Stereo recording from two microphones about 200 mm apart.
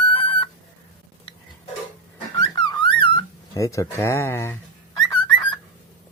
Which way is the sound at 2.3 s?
20° left (ahead or behind).